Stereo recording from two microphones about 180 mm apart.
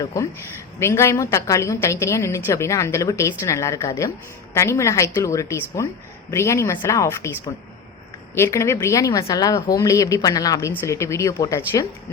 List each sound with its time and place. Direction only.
0.0 s speech: 20° left (ahead or behind)